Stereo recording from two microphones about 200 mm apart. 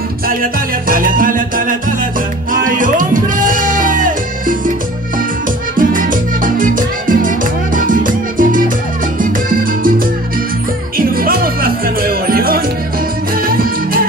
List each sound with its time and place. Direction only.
0.3 s music: 45° right (ahead or behind)
5.8 s salsa music: 45° right (ahead or behind)
9.2 s music: 45° right (ahead or behind)